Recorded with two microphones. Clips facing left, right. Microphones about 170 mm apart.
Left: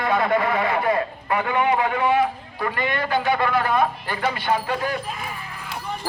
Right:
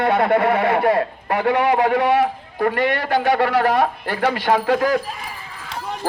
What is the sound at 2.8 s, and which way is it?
A man's voice, 75° right (ahead or behind).